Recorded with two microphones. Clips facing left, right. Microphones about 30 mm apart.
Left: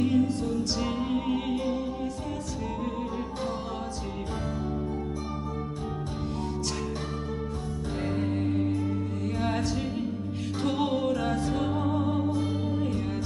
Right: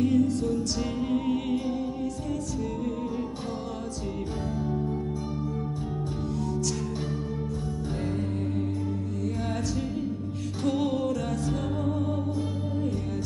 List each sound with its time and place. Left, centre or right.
0.0 s music: left
8.0 s music: left
10.6 s music: left